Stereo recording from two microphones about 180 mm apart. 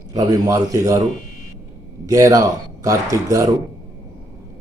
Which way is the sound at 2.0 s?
20° right (ahead or behind).